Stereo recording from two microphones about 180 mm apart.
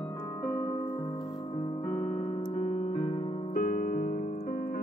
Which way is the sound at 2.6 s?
40° left (ahead or behind).